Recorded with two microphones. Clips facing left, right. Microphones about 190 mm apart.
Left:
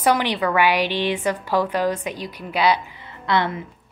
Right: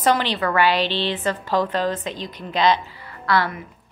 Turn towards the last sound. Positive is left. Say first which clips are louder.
# even
turn(degrees=20)  # may be behind; listen again after turning